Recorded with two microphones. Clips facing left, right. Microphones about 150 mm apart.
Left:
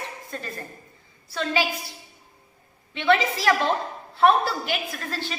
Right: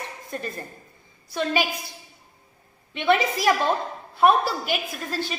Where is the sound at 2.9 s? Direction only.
15° right (ahead or behind).